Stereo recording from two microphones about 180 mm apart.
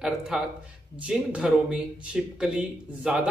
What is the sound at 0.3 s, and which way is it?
Speech, 5° right (ahead or behind).